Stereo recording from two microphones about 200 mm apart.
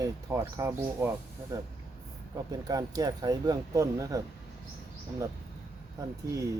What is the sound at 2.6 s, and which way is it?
Speech, 20° right (ahead or behind).